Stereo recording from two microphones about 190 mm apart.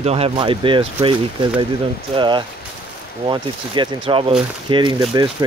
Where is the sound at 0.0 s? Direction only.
30° right (ahead or behind).